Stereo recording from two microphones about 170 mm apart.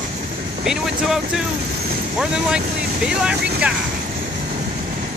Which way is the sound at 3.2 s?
5° right (ahead or behind).